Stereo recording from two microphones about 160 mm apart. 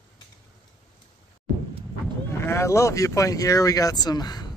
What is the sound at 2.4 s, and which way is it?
Speech, 15° left (ahead or behind).